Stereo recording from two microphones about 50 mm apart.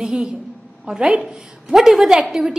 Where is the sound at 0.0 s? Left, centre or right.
Centre.